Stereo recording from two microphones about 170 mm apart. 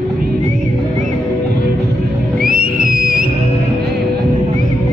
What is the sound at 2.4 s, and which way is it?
Whistle, 60° right (ahead or behind).